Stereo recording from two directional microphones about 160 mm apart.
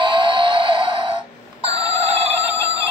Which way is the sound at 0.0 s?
30° right (ahead or behind).